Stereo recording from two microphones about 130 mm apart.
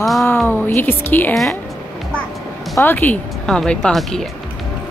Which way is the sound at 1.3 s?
5° left (ahead or behind).